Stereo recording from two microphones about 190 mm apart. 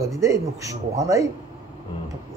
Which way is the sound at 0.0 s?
15° right (ahead or behind).